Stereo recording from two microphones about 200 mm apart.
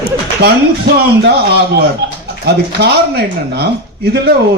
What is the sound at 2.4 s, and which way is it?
Speech, 55° right (ahead or behind).